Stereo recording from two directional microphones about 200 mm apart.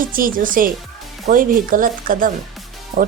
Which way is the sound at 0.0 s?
45° right (ahead or behind).